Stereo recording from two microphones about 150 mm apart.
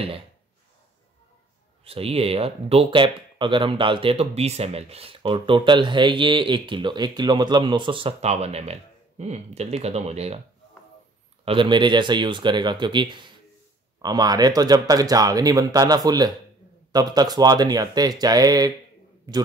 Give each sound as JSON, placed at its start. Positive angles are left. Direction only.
{"t": 1.9, "sound": "speech", "side_deg": -40}
{"t": 11.4, "sound": "speech", "side_deg": -35}